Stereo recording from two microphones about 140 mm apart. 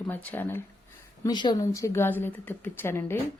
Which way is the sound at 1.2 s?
30° left (ahead or behind).